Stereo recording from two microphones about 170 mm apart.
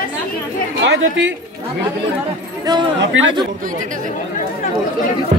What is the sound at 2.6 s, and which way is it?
Speech, 25° right (ahead or behind).